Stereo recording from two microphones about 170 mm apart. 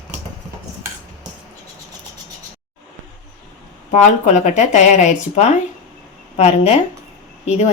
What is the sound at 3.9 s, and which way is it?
A woman's voice, 45° left (ahead or behind).